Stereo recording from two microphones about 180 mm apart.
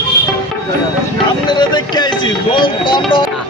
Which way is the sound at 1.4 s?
25° left (ahead or behind).